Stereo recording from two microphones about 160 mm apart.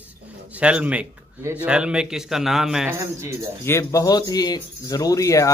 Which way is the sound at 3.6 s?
20° left (ahead or behind).